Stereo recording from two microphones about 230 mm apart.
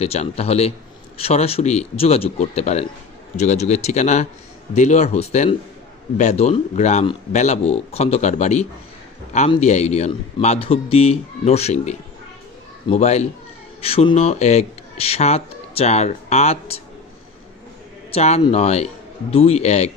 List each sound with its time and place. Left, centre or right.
0.0 s a man's voice: left
18.1 s a man's voice: left